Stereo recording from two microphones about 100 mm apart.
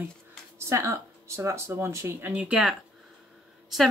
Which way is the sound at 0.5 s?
25° right (ahead or behind).